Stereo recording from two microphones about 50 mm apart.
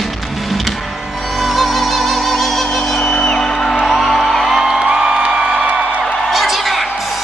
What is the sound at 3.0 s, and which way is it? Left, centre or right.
Music, centre.